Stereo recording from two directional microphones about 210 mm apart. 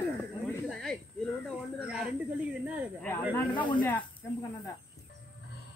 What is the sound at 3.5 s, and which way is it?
Speech, 25° left (ahead or behind).